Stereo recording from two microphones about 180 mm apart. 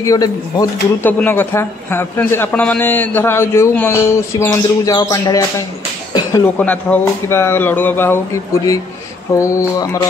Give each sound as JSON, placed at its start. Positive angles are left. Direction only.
{"t": 0.0, "sound": "a man's voice", "side_deg": 20}
{"t": 6.4, "sound": "a man's voice", "side_deg": 10}
{"t": 9.3, "sound": "a man's voice", "side_deg": 15}